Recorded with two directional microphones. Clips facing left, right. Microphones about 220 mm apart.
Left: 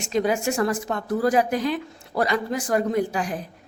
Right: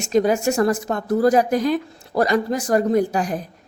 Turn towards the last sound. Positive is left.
turn(degrees=-40)  # may be behind; listen again after turning